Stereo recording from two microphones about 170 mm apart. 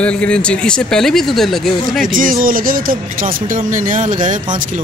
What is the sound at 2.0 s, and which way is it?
Speech, 55° right (ahead or behind).